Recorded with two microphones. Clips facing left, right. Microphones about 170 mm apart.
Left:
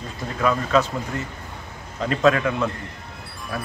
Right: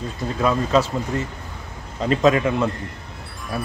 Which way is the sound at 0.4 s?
25° right (ahead or behind).